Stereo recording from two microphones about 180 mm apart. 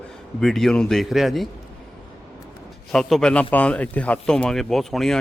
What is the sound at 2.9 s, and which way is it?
Speech, centre (ahead or behind).